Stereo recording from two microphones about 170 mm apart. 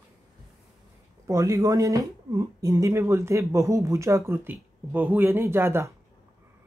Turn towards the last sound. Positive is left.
turn(degrees=-15)  # may be behind; listen again after turning